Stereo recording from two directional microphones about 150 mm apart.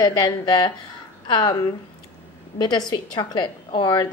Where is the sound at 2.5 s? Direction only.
25° left (ahead or behind).